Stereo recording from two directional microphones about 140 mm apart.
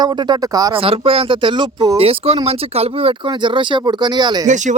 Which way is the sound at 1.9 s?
45° right (ahead or behind).